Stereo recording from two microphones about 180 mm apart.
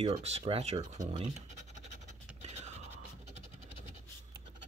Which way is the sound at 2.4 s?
35° right (ahead or behind).